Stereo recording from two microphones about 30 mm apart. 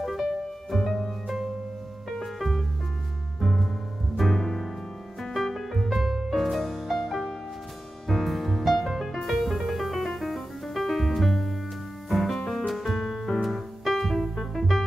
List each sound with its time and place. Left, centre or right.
0.0 s music: centre
1.2 s music: centre
2.1 s music: centre
3.3 s music: centre